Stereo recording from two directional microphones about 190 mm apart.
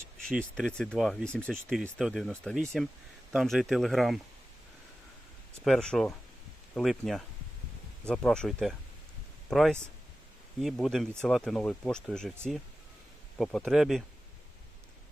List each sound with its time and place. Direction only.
0.3 s speech: 5° left (ahead or behind)
5.6 s speech: 5° left (ahead or behind)
13.4 s speech: centre (ahead or behind)